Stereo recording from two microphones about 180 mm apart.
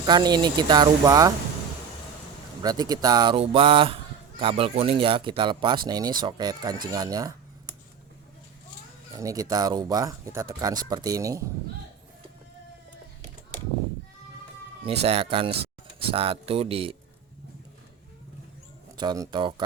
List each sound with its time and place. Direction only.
0.0 s speech: 25° right (ahead or behind)
2.6 s speech: 20° right (ahead or behind)
9.1 s speech: 20° right (ahead or behind)
14.8 s speech: 30° right (ahead or behind)
18.9 s speech: 20° right (ahead or behind)